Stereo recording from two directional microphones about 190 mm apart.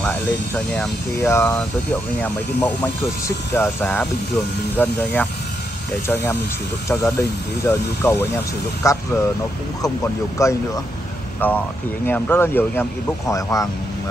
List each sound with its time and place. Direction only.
0.7 s speech: 10° left (ahead or behind)
10.4 s speech: 15° left (ahead or behind)